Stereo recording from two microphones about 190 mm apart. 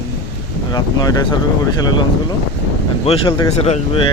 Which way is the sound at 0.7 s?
20° left (ahead or behind).